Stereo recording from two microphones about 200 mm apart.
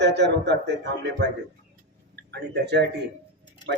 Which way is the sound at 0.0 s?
60° right (ahead or behind).